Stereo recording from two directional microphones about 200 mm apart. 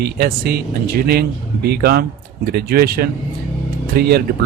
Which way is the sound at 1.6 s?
55° right (ahead or behind).